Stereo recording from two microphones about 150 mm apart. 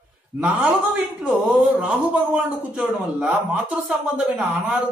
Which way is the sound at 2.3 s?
10° right (ahead or behind).